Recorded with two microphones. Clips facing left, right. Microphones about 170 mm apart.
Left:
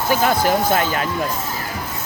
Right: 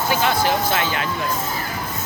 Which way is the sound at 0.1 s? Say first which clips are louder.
Left 3 dB; 45° left (ahead or behind).